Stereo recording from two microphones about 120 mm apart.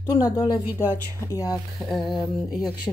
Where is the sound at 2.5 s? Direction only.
5° right (ahead or behind).